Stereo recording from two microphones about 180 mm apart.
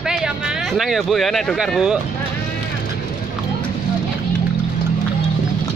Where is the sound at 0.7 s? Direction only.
Centre (ahead or behind).